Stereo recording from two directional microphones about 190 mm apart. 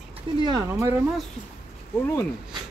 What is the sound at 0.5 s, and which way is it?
Speech, 15° right (ahead or behind).